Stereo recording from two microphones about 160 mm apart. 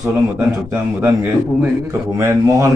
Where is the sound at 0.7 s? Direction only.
15° right (ahead or behind).